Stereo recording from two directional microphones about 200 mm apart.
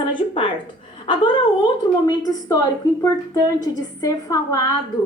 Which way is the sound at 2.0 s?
20° left (ahead or behind).